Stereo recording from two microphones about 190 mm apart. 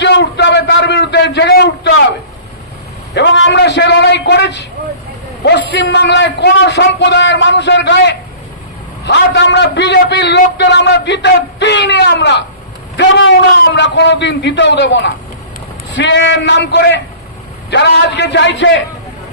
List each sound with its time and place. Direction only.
0.0 s a sound: 65° left (ahead or behind)
3.2 s a man's voice: 75° left (ahead or behind)
5.8 s a man's voice: 65° left (ahead or behind)